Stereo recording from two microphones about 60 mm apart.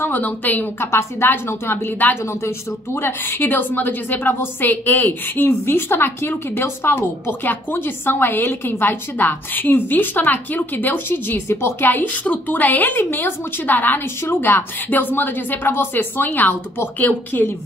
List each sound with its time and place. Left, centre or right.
0.1 s a woman's voice: left
0.7 s a woman's voice: left
11.9 s a woman's voice: left